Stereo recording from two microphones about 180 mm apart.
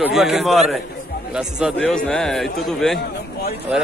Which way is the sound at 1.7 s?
5° left (ahead or behind).